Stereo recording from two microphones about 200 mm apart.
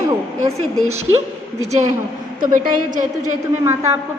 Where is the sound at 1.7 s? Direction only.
35° right (ahead or behind).